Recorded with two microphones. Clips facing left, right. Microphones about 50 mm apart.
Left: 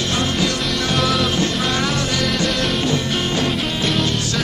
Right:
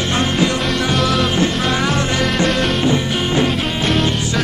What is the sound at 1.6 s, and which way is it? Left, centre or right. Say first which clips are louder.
Music: right 3 dB; centre.